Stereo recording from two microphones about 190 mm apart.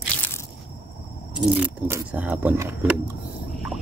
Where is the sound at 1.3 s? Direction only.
10° right (ahead or behind).